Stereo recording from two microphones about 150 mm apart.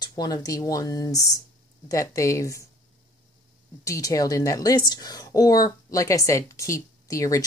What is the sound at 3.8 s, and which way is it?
A woman's voice, 20° left (ahead or behind).